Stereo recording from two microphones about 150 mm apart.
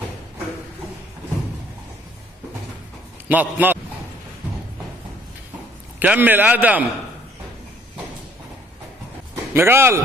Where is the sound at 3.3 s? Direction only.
10° right (ahead or behind).